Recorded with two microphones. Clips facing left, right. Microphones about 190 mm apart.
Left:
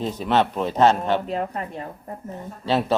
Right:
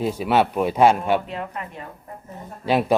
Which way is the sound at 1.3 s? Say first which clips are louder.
Left 4 dB; 40° left (ahead or behind).